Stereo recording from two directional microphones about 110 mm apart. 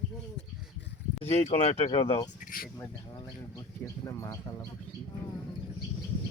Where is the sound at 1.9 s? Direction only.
55° left (ahead or behind).